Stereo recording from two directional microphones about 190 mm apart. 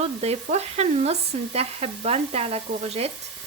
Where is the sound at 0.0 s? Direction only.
35° right (ahead or behind).